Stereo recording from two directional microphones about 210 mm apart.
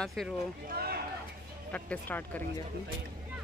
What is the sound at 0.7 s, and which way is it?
Speech, 45° right (ahead or behind).